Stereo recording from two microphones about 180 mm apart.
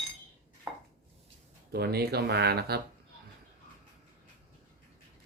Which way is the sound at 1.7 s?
60° right (ahead or behind).